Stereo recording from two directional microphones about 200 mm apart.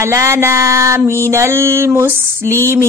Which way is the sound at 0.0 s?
15° right (ahead or behind).